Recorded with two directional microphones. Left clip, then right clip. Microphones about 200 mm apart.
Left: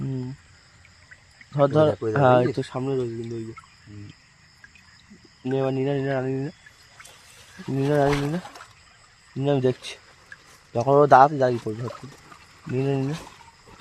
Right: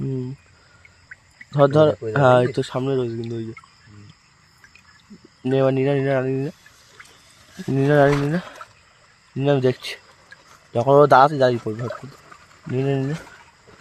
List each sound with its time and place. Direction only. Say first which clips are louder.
1.5 s speech: right 4 dB; 10° right (ahead or behind)
2.6 s speech: right 4 dB; 20° right (ahead or behind)
5.4 s speech: right 6 dB; 25° right (ahead or behind)
7.8 s speech: right 5 dB; 25° right (ahead or behind)
9.4 s speech: right 4 dB; 10° right (ahead or behind)
12.7 s speech: right 3 dB; 15° right (ahead or behind)